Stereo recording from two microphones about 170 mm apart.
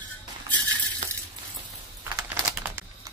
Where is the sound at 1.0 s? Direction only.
45° right (ahead or behind).